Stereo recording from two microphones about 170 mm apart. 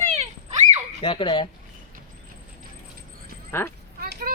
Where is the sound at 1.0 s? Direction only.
30° left (ahead or behind).